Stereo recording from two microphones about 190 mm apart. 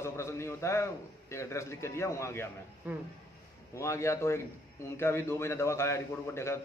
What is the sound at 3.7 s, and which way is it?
A man's voice, 15° left (ahead or behind).